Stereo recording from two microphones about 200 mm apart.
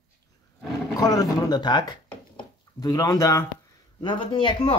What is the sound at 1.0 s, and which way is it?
Speech, 20° left (ahead or behind).